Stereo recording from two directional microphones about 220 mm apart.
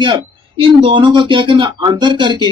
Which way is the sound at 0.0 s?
25° right (ahead or behind).